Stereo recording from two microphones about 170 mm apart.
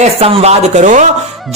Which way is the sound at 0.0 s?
35° right (ahead or behind).